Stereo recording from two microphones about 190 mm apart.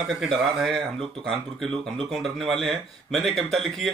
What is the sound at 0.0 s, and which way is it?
Speech, centre (ahead or behind).